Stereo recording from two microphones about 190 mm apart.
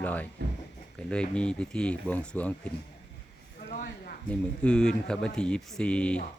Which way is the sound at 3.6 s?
60° left (ahead or behind).